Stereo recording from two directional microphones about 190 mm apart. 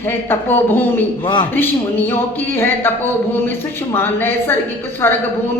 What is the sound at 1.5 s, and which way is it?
Speech, 10° left (ahead or behind).